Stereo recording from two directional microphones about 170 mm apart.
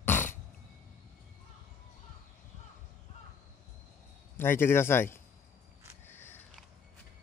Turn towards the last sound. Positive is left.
turn(degrees=15)  # may be behind; listen again after turning